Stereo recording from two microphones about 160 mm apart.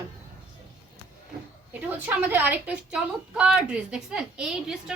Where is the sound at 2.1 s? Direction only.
10° right (ahead or behind).